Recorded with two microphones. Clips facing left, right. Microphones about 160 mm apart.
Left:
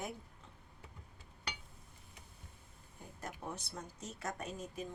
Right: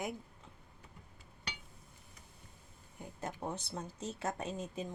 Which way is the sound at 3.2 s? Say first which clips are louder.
Right 4 dB; 30° right (ahead or behind).